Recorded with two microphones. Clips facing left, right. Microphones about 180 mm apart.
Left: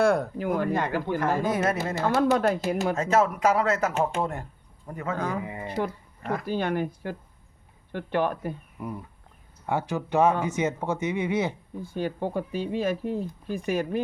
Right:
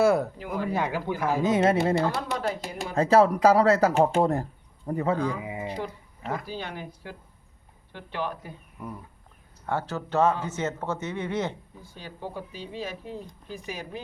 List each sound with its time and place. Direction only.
0.0 s a sound: 5° right (ahead or behind)
0.3 s speech: 50° left (ahead or behind)
0.7 s speech: 5° right (ahead or behind)
1.5 s speech: 25° right (ahead or behind)
2.0 s speech: 55° left (ahead or behind)
2.9 s speech: 35° right (ahead or behind)
5.1 s speech: 50° left (ahead or behind)
5.4 s speech: 10° right (ahead or behind)
5.6 s speech: 50° left (ahead or behind)
8.8 s speech: 10° left (ahead or behind)
11.9 s speech: 55° left (ahead or behind)